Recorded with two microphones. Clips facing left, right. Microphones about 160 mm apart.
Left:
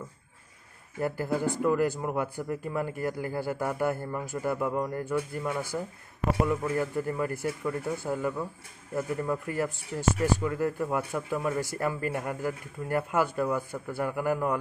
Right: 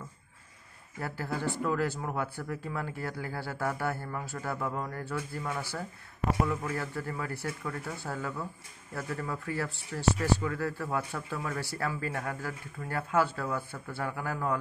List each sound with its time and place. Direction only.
1.0 s speech: 15° left (ahead or behind)